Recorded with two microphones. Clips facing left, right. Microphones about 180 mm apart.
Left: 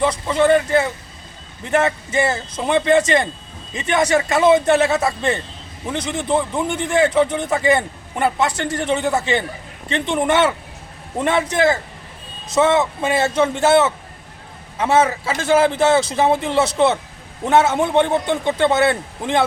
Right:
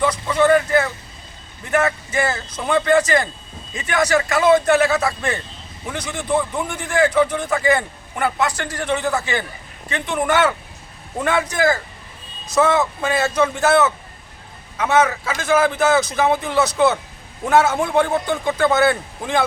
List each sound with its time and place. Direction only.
0.0 s speech: 25° left (ahead or behind)